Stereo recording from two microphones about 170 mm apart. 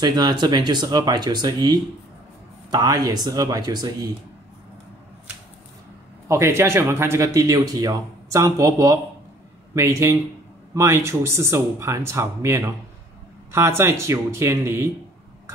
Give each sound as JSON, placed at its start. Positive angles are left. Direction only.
{"t": 0.0, "sound": "speech", "side_deg": -25}
{"t": 6.2, "sound": "speech", "side_deg": -15}